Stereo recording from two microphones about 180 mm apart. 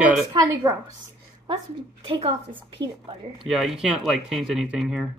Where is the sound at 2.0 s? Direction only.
30° right (ahead or behind).